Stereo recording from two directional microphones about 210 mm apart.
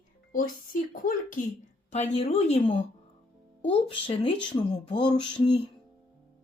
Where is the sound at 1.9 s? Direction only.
30° left (ahead or behind).